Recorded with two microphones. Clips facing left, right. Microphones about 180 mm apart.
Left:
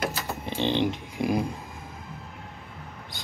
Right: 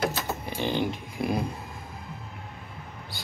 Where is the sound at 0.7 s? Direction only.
20° left (ahead or behind).